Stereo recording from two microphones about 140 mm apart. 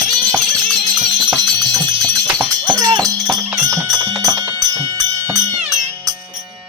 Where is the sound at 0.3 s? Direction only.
Centre (ahead or behind).